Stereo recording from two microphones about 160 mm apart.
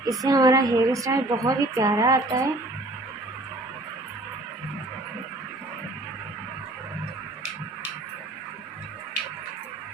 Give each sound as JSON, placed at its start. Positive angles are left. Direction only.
{"t": 0.0, "sound": "a woman's voice", "side_deg": -20}